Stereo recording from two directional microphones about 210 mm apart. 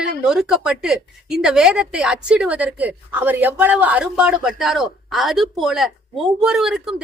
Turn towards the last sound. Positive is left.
turn(degrees=0)  # may be behind; listen again after turning